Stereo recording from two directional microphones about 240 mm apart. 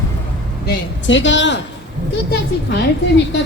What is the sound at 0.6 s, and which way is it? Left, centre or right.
Speech, left.